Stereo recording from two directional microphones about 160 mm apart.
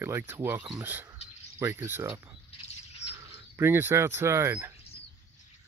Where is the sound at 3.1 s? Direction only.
15° right (ahead or behind).